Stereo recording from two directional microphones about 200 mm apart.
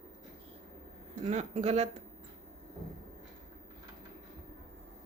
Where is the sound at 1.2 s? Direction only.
35° right (ahead or behind).